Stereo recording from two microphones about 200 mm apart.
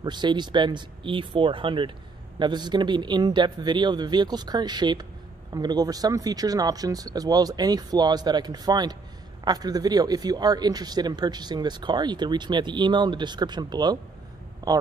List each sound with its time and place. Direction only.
0.0 s speech: 20° right (ahead or behind)